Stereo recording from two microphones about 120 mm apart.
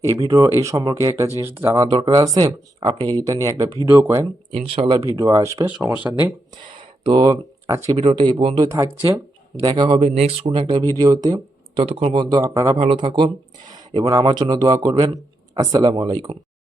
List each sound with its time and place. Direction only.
0.0 s speech: 30° right (ahead or behind)
1.9 s speech: 35° right (ahead or behind)
4.5 s speech: 55° right (ahead or behind)
4.9 s speech: 30° right (ahead or behind)
5.6 s speech: 10° right (ahead or behind)
6.5 s speech: 40° right (ahead or behind)
7.9 s speech: 45° right (ahead or behind)
8.6 s speech: 25° right (ahead or behind)
9.6 s speech: 40° right (ahead or behind)
10.2 s speech: 60° right (ahead or behind); by 11.3 s 35° right (ahead or behind)
11.8 s speech: 55° right (ahead or behind)
12.1 s speech: 35° right (ahead or behind)
12.7 s speech: 50° right (ahead or behind)